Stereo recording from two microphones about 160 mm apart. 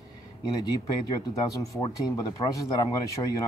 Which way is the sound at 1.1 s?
20° left (ahead or behind).